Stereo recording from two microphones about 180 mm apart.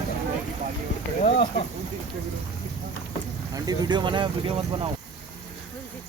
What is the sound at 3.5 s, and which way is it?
Speech, 20° right (ahead or behind).